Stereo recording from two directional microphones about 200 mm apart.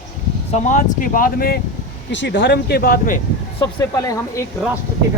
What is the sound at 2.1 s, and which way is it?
Speech, 60° left (ahead or behind).